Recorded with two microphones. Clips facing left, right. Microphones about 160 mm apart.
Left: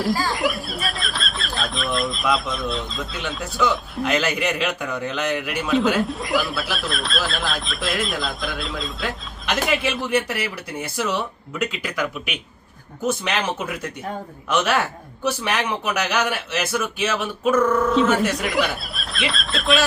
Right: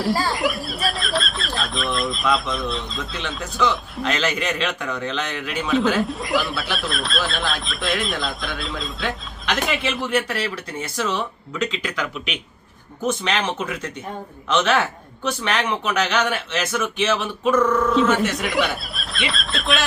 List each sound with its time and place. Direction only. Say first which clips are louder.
0.0 s a man's voice: even; centre (ahead or behind)
10.1 s speech: right 1 dB; 15° left (ahead or behind)
14.5 s a man's voice: right 1 dB; 10° left (ahead or behind)